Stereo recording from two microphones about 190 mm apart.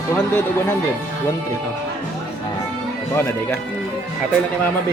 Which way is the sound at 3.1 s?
15° left (ahead or behind).